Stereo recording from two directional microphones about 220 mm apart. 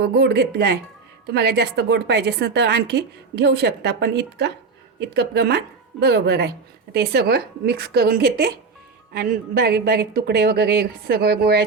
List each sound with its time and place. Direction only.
0.0 s a woman's voice: 50° right (ahead or behind)